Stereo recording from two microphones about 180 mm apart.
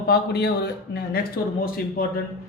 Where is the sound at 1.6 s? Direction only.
55° left (ahead or behind).